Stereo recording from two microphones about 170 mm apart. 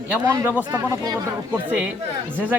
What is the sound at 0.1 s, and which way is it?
Speech, 15° right (ahead or behind).